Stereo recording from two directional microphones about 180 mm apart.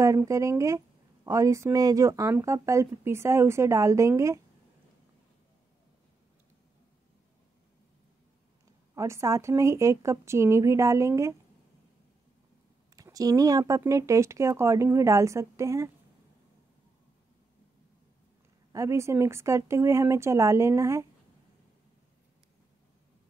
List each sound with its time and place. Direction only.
0.0 s speech: 15° right (ahead or behind)
8.9 s speech: 15° right (ahead or behind)
12.9 s speech: 20° right (ahead or behind)
18.7 s speech: 15° right (ahead or behind)